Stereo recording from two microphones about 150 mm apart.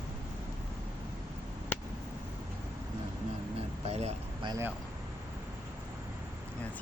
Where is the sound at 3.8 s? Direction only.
45° right (ahead or behind).